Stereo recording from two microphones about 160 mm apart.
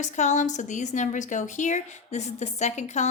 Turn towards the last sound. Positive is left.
turn(degrees=45)  # may be behind; listen again after turning